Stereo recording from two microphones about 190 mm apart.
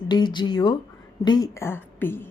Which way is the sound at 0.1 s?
25° left (ahead or behind).